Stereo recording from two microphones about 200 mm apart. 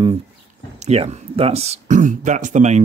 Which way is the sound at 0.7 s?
35° right (ahead or behind).